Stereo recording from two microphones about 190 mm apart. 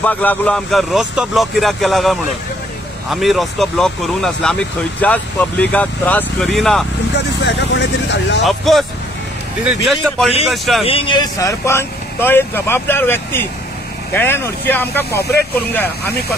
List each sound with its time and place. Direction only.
0.0 s speech: 10° left (ahead or behind)
7.2 s speech: 65° left (ahead or behind)
8.5 s speech: centre (ahead or behind)
10.0 s speech: centre (ahead or behind)
10.8 s speech: 30° left (ahead or behind); by 16.2 s 10° left (ahead or behind)